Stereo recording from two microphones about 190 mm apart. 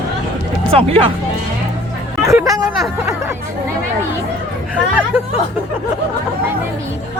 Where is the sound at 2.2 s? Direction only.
15° right (ahead or behind).